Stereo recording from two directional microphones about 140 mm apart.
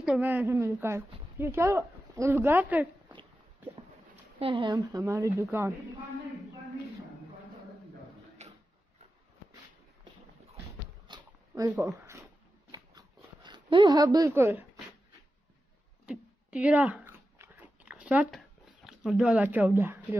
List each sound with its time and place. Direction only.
0.0 s a woman's voice: 10° right (ahead or behind)
4.4 s speech: 40° right (ahead or behind)
4.7 s speech: 25° right (ahead or behind)
8.4 s a sound: 50° right (ahead or behind)
11.1 s zipper: 30° right (ahead or behind)
12.7 s a sound: 30° right (ahead or behind)
16.1 s chewing: 10° right (ahead or behind)
18.9 s a woman's voice: 5° right (ahead or behind)